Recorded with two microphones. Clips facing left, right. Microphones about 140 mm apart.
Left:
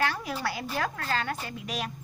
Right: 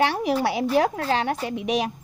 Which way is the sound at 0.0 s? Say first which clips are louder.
Right 8 dB; 70° right (ahead or behind).